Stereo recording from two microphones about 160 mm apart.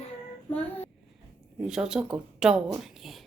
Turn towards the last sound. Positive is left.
turn(degrees=0)  # may be behind; listen again after turning